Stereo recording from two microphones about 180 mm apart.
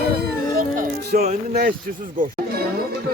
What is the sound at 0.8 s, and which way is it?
Speech, 55° right (ahead or behind).